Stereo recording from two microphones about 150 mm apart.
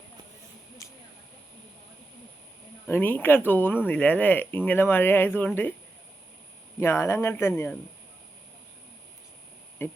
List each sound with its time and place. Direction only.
2.8 s speech: 15° left (ahead or behind)
6.7 s speech: 15° left (ahead or behind)
9.8 s speech: 15° left (ahead or behind)